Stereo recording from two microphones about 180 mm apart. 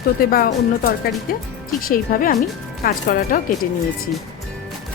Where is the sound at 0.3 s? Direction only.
55° left (ahead or behind).